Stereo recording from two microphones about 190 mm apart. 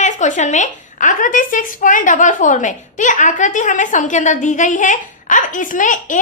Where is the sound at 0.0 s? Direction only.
40° left (ahead or behind).